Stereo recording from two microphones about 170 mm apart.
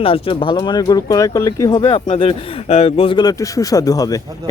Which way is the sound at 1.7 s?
30° left (ahead or behind).